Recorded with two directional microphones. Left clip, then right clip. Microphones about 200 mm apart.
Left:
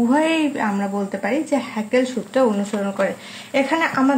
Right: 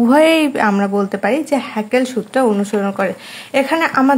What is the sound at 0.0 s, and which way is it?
A woman's voice, 45° right (ahead or behind).